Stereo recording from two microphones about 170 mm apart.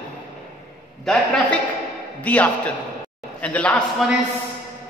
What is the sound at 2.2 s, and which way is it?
A man's voice, 10° left (ahead or behind).